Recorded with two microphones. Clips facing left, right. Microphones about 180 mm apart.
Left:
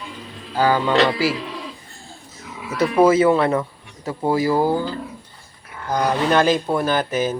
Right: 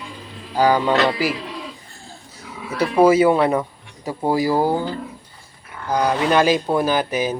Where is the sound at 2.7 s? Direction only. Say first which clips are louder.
Right 1 dB; 10° right (ahead or behind).